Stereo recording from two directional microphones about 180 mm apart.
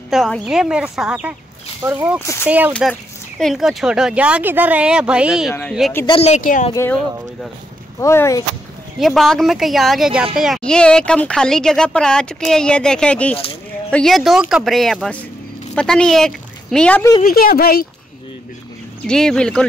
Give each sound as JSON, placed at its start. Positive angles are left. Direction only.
{"t": 0.1, "sound": "speech", "side_deg": 0}
{"t": 2.7, "sound": "speech", "side_deg": 5}
{"t": 6.0, "sound": "speech", "side_deg": 35}
{"t": 6.7, "sound": "speech", "side_deg": 15}
{"t": 8.0, "sound": "speech", "side_deg": 15}
{"t": 9.0, "sound": "speech", "side_deg": 0}
{"t": 17.2, "sound": "speech", "side_deg": 55}
{"t": 19.0, "sound": "speech", "side_deg": 5}